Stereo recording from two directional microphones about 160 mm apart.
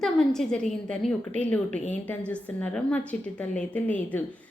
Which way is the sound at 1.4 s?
10° left (ahead or behind).